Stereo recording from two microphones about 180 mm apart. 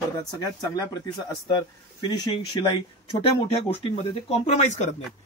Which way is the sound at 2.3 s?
30° left (ahead or behind).